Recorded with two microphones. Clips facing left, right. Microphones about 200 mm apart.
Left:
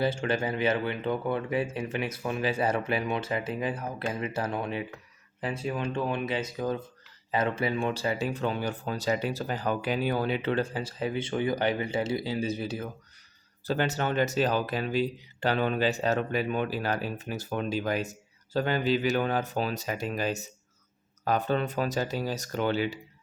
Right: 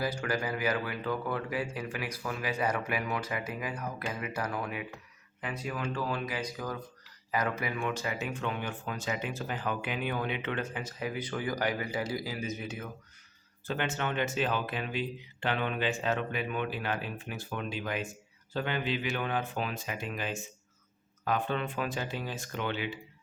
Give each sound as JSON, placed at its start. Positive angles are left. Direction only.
{"t": 0.0, "sound": "speech", "side_deg": 25}